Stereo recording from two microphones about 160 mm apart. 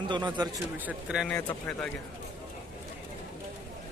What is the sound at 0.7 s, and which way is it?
Speech, 10° right (ahead or behind).